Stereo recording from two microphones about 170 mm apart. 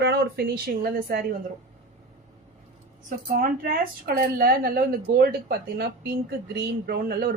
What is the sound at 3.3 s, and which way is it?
A woman's voice, 55° right (ahead or behind).